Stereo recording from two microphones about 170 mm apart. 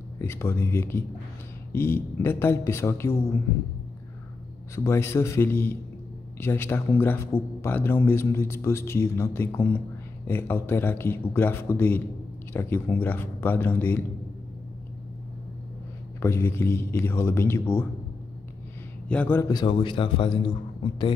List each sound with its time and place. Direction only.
0.2 s a man's voice: 15° left (ahead or behind)
4.7 s a man's voice: 15° left (ahead or behind)
16.2 s a man's voice: 15° left (ahead or behind)
19.0 s a man's voice: 10° left (ahead or behind)
19.5 s a man's voice: 30° left (ahead or behind)